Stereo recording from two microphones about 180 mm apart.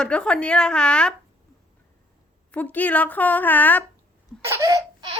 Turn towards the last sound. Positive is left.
turn(degrees=-25)  # may be behind; listen again after turning